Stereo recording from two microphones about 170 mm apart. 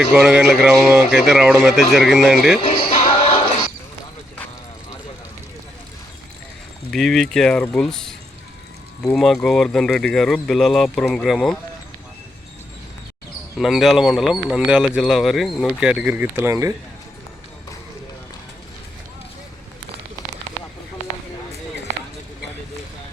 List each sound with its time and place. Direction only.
0.1 s speech: 5° right (ahead or behind)
2.6 s basketball bounce: 35° left (ahead or behind)
6.9 s speech: 5° left (ahead or behind)
13.6 s speech: centre (ahead or behind)
15.8 s speech: 5° right (ahead or behind)